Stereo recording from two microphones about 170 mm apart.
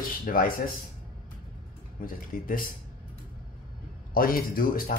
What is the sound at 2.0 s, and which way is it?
Speech, 55° left (ahead or behind).